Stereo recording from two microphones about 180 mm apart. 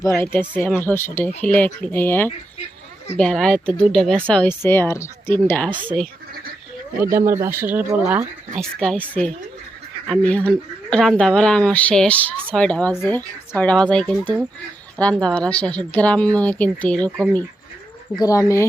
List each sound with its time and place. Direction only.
0.0 s speech: 15° left (ahead or behind)
7.0 s speech: 15° right (ahead or behind)
8.5 s speech: centre (ahead or behind)
18.2 s speech: 20° left (ahead or behind)